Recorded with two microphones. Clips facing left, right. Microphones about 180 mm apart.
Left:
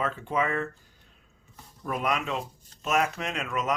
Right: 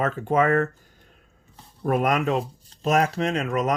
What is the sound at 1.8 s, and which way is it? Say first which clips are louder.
Speech: right 7 dB; 50° right (ahead or behind).